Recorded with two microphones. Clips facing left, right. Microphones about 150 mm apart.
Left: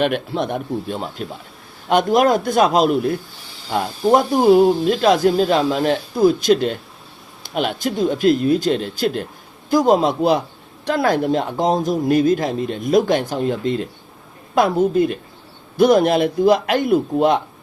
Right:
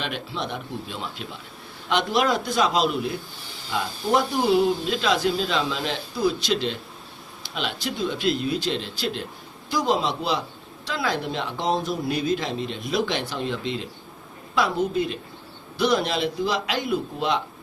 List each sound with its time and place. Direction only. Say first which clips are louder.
0.0 s speech: left 11 dB; 55° left (ahead or behind)